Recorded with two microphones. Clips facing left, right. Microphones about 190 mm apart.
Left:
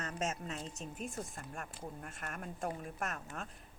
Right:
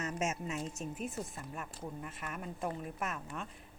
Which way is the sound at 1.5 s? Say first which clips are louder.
Right 2 dB; 45° left (ahead or behind).